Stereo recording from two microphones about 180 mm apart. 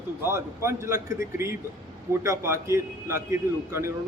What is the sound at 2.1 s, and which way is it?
Speech, 15° right (ahead or behind).